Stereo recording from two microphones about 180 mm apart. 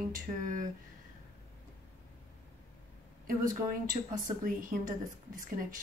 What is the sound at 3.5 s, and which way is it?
Speech, 50° right (ahead or behind).